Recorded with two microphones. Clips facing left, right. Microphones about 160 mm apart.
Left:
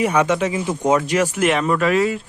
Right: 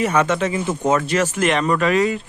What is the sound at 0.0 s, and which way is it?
Speech, 10° left (ahead or behind).